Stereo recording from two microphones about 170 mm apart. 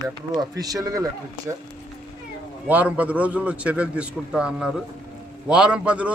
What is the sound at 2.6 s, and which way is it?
A man's voice, 10° right (ahead or behind).